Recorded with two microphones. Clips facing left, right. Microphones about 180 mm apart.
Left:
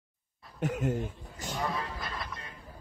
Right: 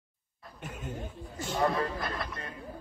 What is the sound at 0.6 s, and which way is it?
Speech, 80° left.